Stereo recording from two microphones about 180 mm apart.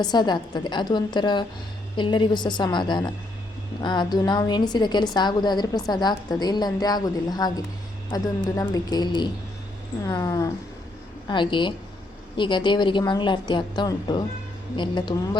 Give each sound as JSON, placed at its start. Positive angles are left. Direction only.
{"t": 0.0, "sound": "a woman's voice", "side_deg": 25}